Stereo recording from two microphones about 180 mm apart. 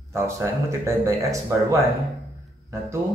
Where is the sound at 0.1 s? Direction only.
15° right (ahead or behind).